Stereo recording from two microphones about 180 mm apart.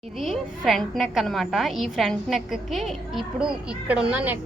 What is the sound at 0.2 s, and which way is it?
A woman's voice, centre (ahead or behind).